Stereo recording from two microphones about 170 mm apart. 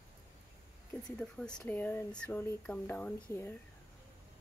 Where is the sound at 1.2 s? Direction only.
5° left (ahead or behind).